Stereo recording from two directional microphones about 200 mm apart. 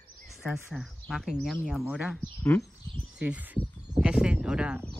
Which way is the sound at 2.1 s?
10° left (ahead or behind).